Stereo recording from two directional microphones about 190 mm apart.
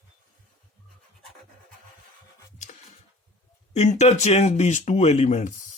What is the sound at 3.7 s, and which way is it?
Speech, 35° left (ahead or behind).